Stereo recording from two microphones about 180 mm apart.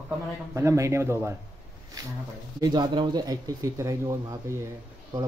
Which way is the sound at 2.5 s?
20° right (ahead or behind).